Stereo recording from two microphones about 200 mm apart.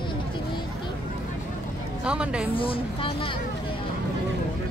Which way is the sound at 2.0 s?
5° right (ahead or behind).